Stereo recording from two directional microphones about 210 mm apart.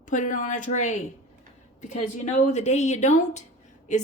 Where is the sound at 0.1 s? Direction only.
35° left (ahead or behind).